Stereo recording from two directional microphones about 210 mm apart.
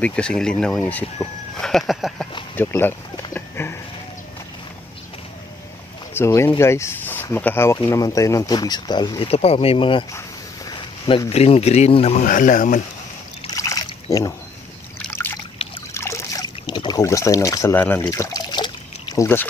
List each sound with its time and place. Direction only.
0.0 s speech: 5° left (ahead or behind)
1.6 s a sound: centre (ahead or behind)
6.1 s speech: 10° left (ahead or behind); by 12.8 s 40° left (ahead or behind)
13.5 s splash: 15° left (ahead or behind)
15.0 s trickle: 10° left (ahead or behind)
19.1 s speech: 10° left (ahead or behind)